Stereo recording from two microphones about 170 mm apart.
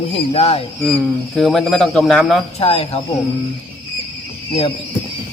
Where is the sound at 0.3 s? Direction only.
40° left (ahead or behind).